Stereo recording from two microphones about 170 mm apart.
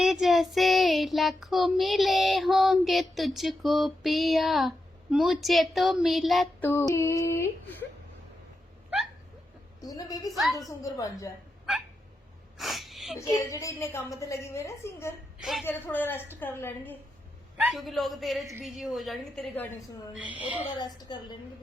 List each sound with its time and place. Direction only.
0.0 s child singing: centre (ahead or behind)
6.6 s female singing: 10° left (ahead or behind)
6.9 s a woman's voice: 15° left (ahead or behind)
9.8 s a woman's voice: 20° left (ahead or behind)
12.5 s sneeze: centre (ahead or behind)
13.1 s a woman's voice: 20° left (ahead or behind)
15.4 s a woman's voice: centre (ahead or behind)
15.6 s a woman's voice: 10° left (ahead or behind)
17.6 s child singing: centre (ahead or behind)
20.1 s a woman's voice: 10° right (ahead or behind)
20.7 s a woman's voice: 25° left (ahead or behind)